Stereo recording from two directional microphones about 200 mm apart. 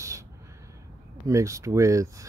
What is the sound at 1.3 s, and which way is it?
Speech, 15° right (ahead or behind).